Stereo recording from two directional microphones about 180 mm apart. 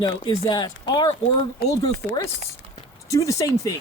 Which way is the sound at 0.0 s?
30° left (ahead or behind).